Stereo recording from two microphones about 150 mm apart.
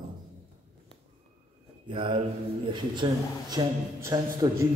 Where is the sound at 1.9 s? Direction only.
35° right (ahead or behind).